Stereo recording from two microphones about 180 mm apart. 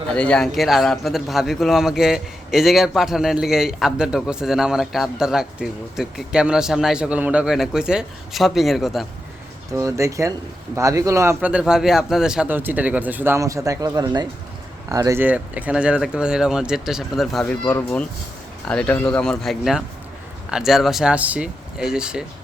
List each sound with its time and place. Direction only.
0.1 s a man's voice: 5° left (ahead or behind)
9.7 s speech: 15° right (ahead or behind)
11.3 s a man's voice: 5° right (ahead or behind)